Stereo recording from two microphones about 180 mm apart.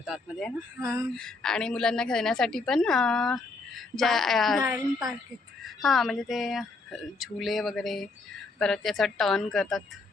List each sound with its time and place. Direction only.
0.0 s a woman's voice: centre (ahead or behind)
0.8 s speech: 15° right (ahead or behind)
1.1 s a woman's voice: 5° left (ahead or behind)
5.6 s a woman's voice: centre (ahead or behind)